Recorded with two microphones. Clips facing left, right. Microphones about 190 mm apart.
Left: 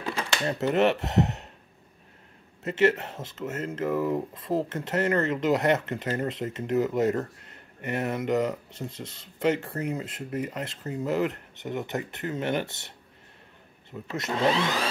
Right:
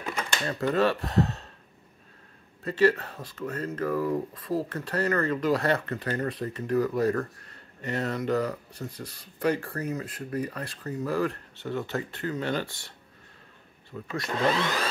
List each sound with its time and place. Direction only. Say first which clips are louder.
0.5 s speech: left 2 dB; 25° left (ahead or behind)
2.6 s speech: even; 20° left (ahead or behind)